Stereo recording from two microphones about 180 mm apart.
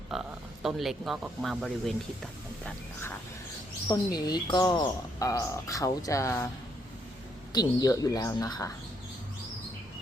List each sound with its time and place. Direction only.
0.1 s speech: centre (ahead or behind)
3.8 s speech: 25° left (ahead or behind)
7.5 s speech: 20° left (ahead or behind)